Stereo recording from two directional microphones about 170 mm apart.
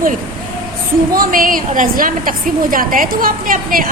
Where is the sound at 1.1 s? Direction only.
55° right (ahead or behind).